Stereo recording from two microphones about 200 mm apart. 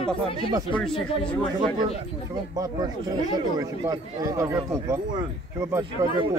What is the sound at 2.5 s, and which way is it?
Speech, 20° right (ahead or behind).